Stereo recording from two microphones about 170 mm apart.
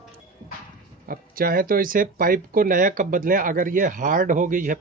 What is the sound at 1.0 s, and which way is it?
Speech, 60° right (ahead or behind).